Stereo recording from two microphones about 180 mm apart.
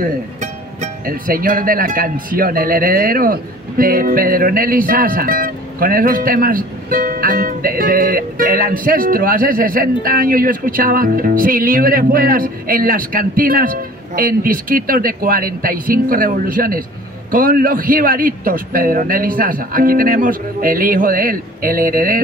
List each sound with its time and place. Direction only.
1.0 s a man's voice: 55° right (ahead or behind)